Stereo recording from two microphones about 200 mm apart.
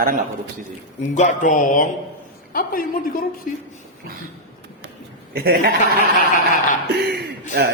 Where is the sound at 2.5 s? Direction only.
45° left (ahead or behind).